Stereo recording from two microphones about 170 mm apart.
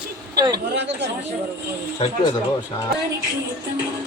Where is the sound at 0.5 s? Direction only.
90° right.